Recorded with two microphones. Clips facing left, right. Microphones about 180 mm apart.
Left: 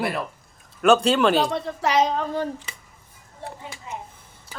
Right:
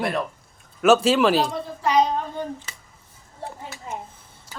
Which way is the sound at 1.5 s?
80° left.